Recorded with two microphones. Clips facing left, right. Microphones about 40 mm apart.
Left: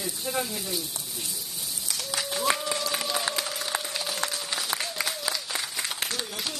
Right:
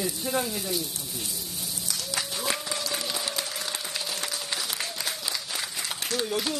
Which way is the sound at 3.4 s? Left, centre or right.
Centre.